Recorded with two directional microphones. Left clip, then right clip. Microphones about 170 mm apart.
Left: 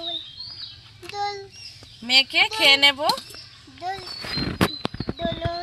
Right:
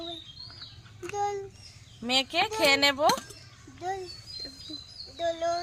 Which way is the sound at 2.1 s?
30° right (ahead or behind).